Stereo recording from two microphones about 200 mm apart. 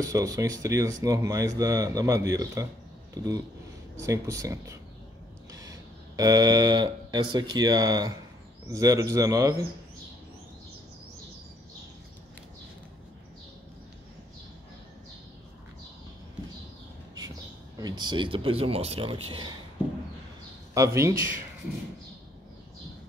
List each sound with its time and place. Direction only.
0.0 s speech: 15° right (ahead or behind)
17.7 s speech: 20° right (ahead or behind)
20.7 s speech: 15° right (ahead or behind)